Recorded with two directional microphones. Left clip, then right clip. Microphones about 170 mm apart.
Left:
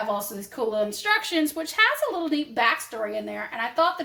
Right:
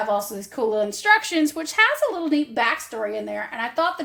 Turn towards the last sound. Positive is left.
turn(degrees=-35)  # may be behind; listen again after turning